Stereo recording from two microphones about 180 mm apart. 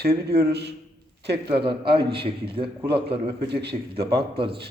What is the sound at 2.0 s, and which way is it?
Speech, 65° right (ahead or behind).